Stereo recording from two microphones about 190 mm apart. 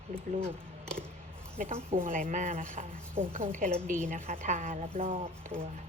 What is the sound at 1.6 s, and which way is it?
A woman's voice, 40° right (ahead or behind).